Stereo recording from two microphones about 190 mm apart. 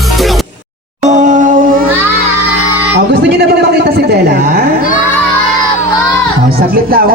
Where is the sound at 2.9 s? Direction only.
60° right (ahead or behind).